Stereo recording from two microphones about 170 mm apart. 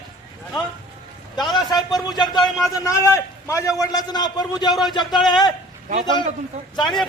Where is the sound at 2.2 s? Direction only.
25° left (ahead or behind).